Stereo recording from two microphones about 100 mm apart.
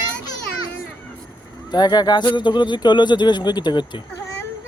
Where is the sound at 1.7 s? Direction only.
45° left (ahead or behind).